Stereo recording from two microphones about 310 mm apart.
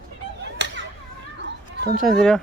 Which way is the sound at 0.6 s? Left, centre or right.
Right.